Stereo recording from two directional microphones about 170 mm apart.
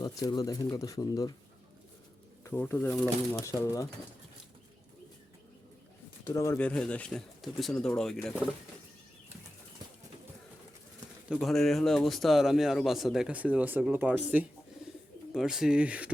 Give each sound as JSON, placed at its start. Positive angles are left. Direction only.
{"t": 0.0, "sound": "speech", "side_deg": 25}
{"t": 2.4, "sound": "a man's voice", "side_deg": 10}
{"t": 3.4, "sound": "speech", "side_deg": 15}
{"t": 6.2, "sound": "a man's voice", "side_deg": 15}
{"t": 11.3, "sound": "a man's voice", "side_deg": 0}